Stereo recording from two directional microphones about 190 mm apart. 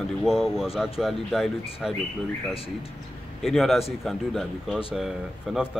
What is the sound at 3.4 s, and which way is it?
Speech, centre (ahead or behind).